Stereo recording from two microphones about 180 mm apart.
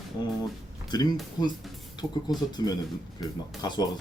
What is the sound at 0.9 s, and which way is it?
Speech, 25° left (ahead or behind).